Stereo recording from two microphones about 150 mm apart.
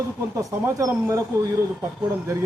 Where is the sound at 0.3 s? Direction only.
20° right (ahead or behind).